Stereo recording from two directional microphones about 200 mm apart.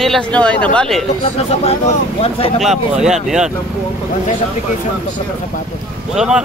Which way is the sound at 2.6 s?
Centre (ahead or behind).